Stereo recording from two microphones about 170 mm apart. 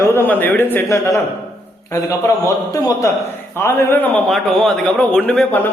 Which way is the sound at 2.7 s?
20° left (ahead or behind).